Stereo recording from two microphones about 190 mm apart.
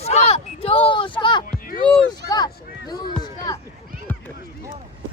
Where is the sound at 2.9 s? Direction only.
20° left (ahead or behind).